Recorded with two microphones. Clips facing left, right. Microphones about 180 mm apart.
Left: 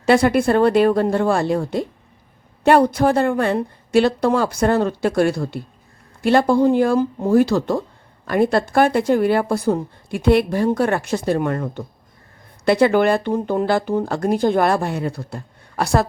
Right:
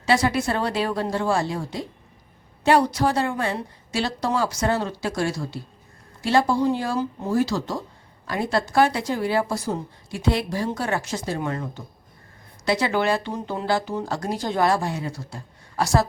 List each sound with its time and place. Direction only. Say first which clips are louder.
0.0 s speech: left 6 dB; 55° left (ahead or behind)